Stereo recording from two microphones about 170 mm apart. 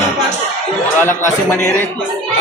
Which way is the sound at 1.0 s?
15° left (ahead or behind).